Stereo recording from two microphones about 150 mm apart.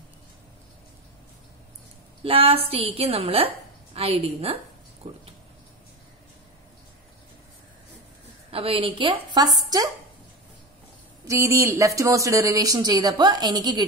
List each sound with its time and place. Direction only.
2.2 s a woman's voice: 40° right (ahead or behind)
8.5 s a woman's voice: 40° right (ahead or behind)
11.2 s speech: 20° right (ahead or behind)